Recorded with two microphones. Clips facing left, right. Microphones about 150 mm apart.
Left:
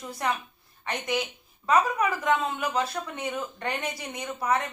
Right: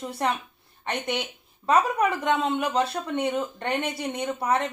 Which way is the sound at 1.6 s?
30° right (ahead or behind).